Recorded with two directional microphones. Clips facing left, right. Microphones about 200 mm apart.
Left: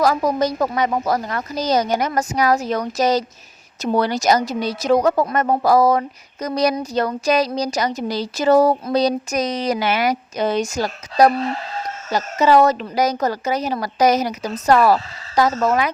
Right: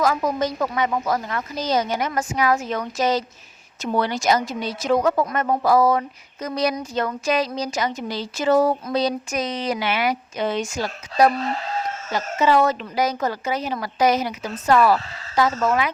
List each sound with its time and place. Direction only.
0.0 s speech: 35° left (ahead or behind)